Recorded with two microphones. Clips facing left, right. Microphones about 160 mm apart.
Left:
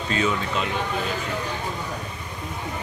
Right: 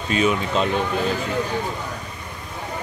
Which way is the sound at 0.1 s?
20° right (ahead or behind).